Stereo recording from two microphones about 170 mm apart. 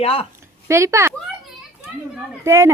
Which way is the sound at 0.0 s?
35° left (ahead or behind).